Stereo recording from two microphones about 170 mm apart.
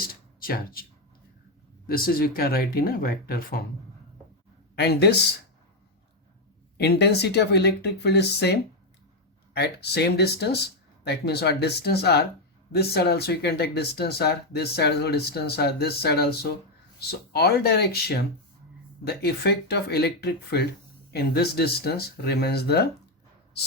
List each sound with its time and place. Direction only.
0.1 s a sound: 60° left (ahead or behind)
1.9 s speech: 60° left (ahead or behind)
4.7 s speech: 75° left (ahead or behind)
6.7 s speech: 75° left (ahead or behind)